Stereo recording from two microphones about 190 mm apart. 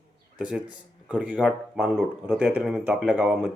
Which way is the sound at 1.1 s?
5° right (ahead or behind).